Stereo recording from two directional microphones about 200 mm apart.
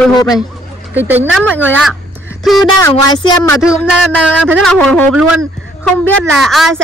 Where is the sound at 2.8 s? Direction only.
15° left (ahead or behind).